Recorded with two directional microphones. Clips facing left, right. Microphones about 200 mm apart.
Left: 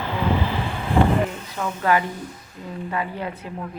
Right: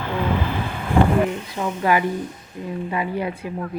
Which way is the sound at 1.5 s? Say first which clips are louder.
Even; 15° right (ahead or behind).